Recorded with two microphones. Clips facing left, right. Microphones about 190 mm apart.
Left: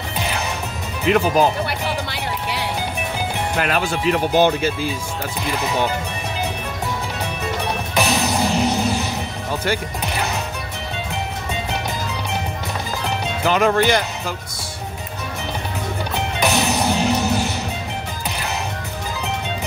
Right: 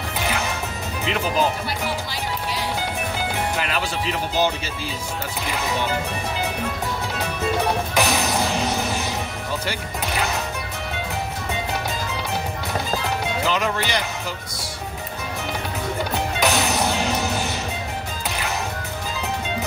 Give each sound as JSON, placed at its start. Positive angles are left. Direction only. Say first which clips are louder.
{"t": 1.0, "sound": "music", "louder": "left 6 dB", "side_deg": 55}
{"t": 3.5, "sound": "speech", "louder": "left 4 dB", "side_deg": 50}
{"t": 7.9, "sound": "music", "louder": "left 2 dB", "side_deg": 20}
{"t": 13.5, "sound": "speech", "louder": "left 10 dB", "side_deg": 55}
{"t": 16.3, "sound": "music", "louder": "left 2 dB", "side_deg": 15}
{"t": 17.1, "sound": "music", "louder": "left 4 dB", "side_deg": -15}